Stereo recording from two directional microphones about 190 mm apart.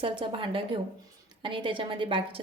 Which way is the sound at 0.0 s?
25° right (ahead or behind).